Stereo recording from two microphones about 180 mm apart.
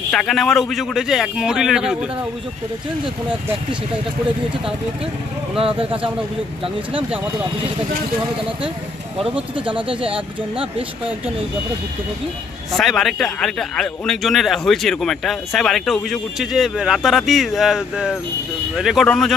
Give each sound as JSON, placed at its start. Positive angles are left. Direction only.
{"t": 0.1, "sound": "speech", "side_deg": 5}
{"t": 6.6, "sound": "speech", "side_deg": -30}
{"t": 9.7, "sound": "speech", "side_deg": -30}
{"t": 12.7, "sound": "speech", "side_deg": 0}